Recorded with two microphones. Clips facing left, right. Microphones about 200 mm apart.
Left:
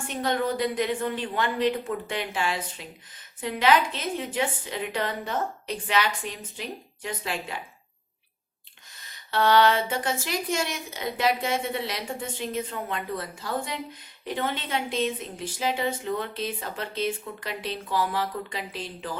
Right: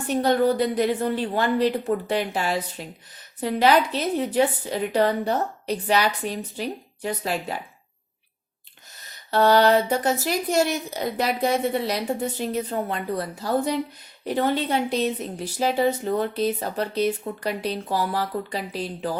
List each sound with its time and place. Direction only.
0.1 s a woman's voice: 40° right (ahead or behind)
9.0 s a woman's voice: 40° right (ahead or behind)